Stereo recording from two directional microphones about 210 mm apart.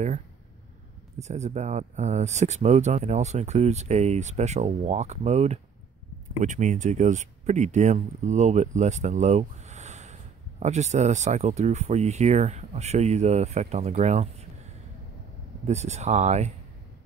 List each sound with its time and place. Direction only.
1.2 s speech: 35° right (ahead or behind)
15.6 s speech: 30° right (ahead or behind)